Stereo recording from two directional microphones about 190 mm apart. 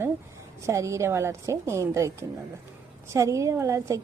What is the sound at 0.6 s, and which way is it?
A woman's voice, 15° right (ahead or behind).